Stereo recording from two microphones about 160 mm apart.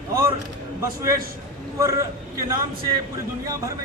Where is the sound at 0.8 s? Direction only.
20° right (ahead or behind).